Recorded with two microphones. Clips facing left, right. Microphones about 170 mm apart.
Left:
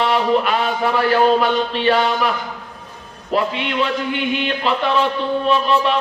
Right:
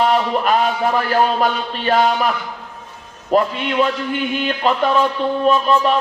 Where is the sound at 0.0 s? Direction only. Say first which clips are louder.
Even; 45° right (ahead or behind).